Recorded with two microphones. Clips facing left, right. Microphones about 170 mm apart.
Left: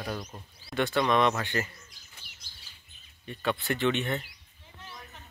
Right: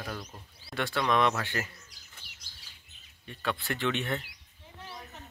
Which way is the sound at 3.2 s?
5° left (ahead or behind).